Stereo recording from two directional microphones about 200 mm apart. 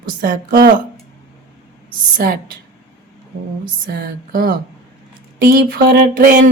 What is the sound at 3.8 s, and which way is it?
Speech, 45° right (ahead or behind).